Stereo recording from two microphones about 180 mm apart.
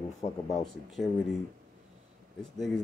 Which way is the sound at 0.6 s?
Centre (ahead or behind).